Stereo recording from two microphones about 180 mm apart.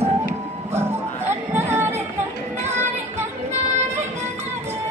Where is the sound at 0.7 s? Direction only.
10° right (ahead or behind).